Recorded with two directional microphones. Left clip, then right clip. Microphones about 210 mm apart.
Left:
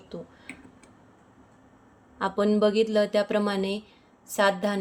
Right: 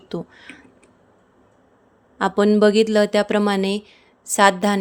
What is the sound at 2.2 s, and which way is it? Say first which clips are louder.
Speech: right 7 dB; 35° right (ahead or behind).